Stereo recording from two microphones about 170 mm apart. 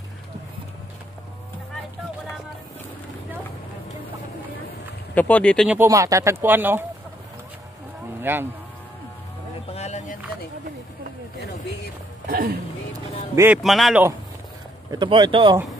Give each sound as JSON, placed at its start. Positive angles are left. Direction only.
{"t": 5.1, "sound": "speech", "side_deg": 10}
{"t": 5.7, "sound": "speech", "side_deg": -15}
{"t": 8.2, "sound": "speech", "side_deg": -10}
{"t": 9.7, "sound": "a sound", "side_deg": 40}
{"t": 12.3, "sound": "speech", "side_deg": -60}
{"t": 13.6, "sound": "speech", "side_deg": 0}
{"t": 14.9, "sound": "speech", "side_deg": -25}